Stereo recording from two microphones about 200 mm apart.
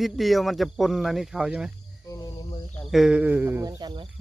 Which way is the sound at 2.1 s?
20° left (ahead or behind).